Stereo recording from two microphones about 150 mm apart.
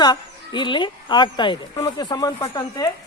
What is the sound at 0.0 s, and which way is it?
Speech, 30° left (ahead or behind).